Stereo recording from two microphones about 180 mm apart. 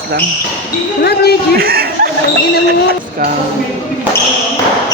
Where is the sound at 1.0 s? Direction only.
60° left (ahead or behind).